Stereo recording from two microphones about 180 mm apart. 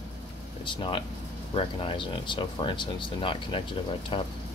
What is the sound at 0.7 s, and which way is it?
Speech, 25° left (ahead or behind).